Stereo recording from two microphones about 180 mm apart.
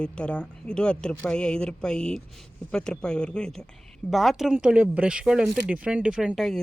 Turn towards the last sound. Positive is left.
turn(degrees=0)  # may be behind; listen again after turning